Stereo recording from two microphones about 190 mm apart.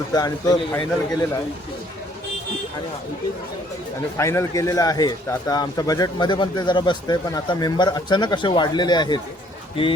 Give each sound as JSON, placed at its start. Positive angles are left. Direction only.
{"t": 0.1, "sound": "speech", "side_deg": 20}
{"t": 4.2, "sound": "speech", "side_deg": 15}